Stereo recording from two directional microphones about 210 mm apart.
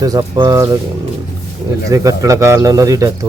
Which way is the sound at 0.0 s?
15° right (ahead or behind).